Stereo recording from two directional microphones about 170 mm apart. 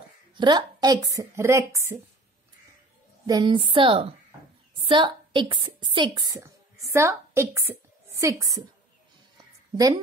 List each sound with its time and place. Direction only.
0.4 s a woman's voice: 25° right (ahead or behind)
3.3 s a woman's voice: 25° right (ahead or behind)